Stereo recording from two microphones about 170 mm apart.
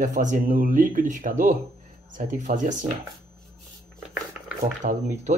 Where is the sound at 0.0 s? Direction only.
50° right (ahead or behind).